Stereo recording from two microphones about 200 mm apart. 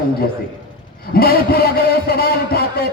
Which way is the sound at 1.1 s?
50° left (ahead or behind).